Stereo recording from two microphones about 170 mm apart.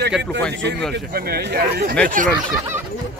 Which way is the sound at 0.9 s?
65° right (ahead or behind).